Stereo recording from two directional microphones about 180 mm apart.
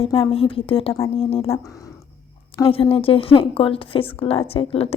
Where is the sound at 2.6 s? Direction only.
30° left (ahead or behind).